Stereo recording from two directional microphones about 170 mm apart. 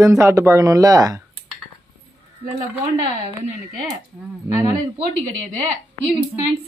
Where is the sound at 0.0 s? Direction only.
15° right (ahead or behind).